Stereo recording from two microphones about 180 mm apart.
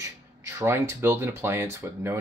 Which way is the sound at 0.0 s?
15° right (ahead or behind).